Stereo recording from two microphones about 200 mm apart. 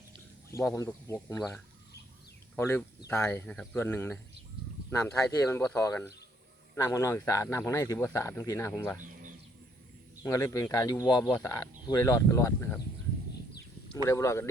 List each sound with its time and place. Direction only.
0.5 s speech: 15° left (ahead or behind)
10.2 s speech: 15° left (ahead or behind)
13.9 s speech: 15° left (ahead or behind)